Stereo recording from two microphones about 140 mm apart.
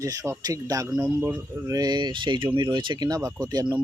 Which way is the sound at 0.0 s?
25° right (ahead or behind).